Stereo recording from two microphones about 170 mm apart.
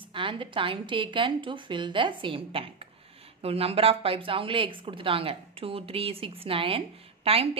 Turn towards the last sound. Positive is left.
turn(degrees=-35)  # may be behind; listen again after turning